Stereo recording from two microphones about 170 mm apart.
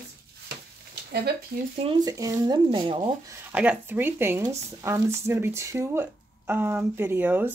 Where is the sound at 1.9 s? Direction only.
25° right (ahead or behind).